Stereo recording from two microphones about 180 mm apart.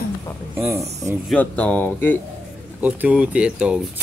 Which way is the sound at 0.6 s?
15° right (ahead or behind).